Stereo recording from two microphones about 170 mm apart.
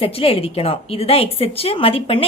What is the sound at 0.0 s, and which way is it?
A woman's voice, 35° left (ahead or behind).